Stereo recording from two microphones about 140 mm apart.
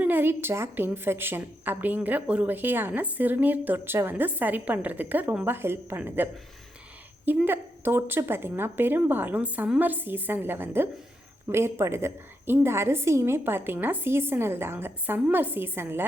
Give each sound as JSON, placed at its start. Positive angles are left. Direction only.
{"t": 0.0, "sound": "a woman's voice", "side_deg": -15}
{"t": 7.3, "sound": "a woman's voice", "side_deg": -15}